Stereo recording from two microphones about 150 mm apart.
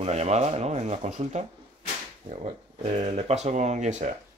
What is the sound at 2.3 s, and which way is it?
Speech, 40° right (ahead or behind).